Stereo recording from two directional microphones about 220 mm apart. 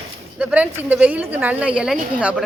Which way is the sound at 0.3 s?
5° right (ahead or behind).